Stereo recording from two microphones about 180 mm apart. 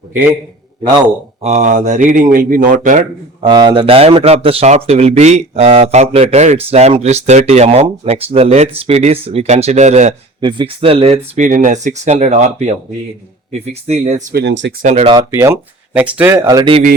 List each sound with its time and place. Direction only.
1.5 s speech: 40° right (ahead or behind)
3.4 s speech: 25° right (ahead or behind); by 10.2 s 40° right (ahead or behind)
10.4 s speech: 25° right (ahead or behind)
14.3 s speech: 80° right
14.8 s speech: 40° right (ahead or behind)
15.0 s speech: 20° right (ahead or behind)